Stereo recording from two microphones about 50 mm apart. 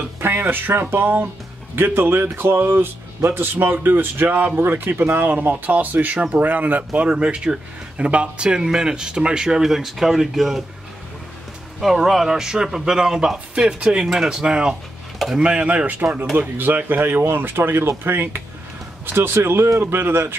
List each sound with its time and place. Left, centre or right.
0.2 s speech: right; by 10.6 s centre
11.8 s speech: centre; by 19.8 s right
19.8 s speech: right